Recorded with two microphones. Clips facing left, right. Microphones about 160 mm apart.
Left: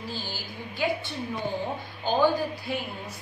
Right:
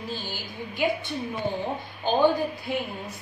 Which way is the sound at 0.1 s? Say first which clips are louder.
Right 2 dB; 20° right (ahead or behind).